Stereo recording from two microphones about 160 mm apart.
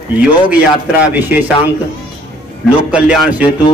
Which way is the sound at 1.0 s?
10° right (ahead or behind).